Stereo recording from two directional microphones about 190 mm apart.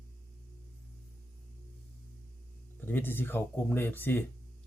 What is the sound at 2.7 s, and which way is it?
Speech, 10° left (ahead or behind).